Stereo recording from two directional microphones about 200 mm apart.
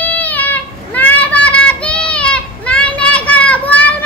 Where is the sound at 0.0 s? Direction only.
10° left (ahead or behind).